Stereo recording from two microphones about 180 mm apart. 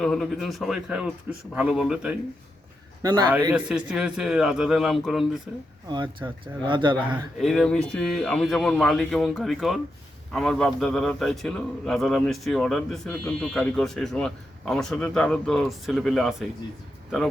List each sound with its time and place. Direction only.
0.0 s a man's voice: centre (ahead or behind)
3.0 s a man's voice: 20° right (ahead or behind)
3.5 s a man's voice: 5° right (ahead or behind)
5.9 s speech: 25° right (ahead or behind)
7.3 s a man's voice: centre (ahead or behind)